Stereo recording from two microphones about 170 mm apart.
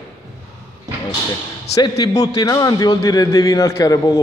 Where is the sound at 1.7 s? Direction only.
20° left (ahead or behind).